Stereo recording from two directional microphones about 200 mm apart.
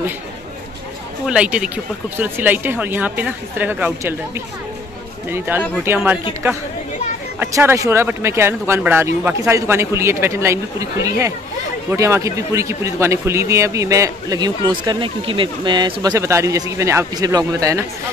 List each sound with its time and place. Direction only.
1.2 s speech: 5° right (ahead or behind)
5.3 s speech: 10° right (ahead or behind)
7.3 s speech: 15° right (ahead or behind)